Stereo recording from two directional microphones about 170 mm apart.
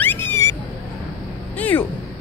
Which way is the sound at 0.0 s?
10° left (ahead or behind).